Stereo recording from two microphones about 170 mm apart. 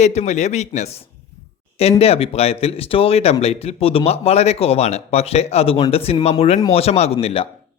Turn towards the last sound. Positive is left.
turn(degrees=35)  # may be behind; listen again after turning